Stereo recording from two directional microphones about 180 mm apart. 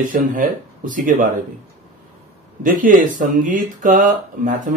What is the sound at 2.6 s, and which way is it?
Speech, 50° right (ahead or behind).